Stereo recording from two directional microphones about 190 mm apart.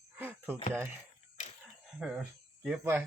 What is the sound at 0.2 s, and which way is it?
Cricket, 10° right (ahead or behind).